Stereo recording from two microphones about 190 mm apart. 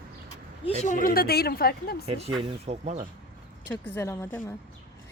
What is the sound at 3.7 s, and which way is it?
Speech, 10° left (ahead or behind).